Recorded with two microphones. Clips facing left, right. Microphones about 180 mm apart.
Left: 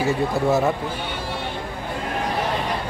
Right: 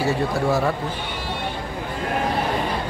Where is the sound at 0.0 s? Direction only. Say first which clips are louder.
Left 1 dB; 20° left (ahead or behind).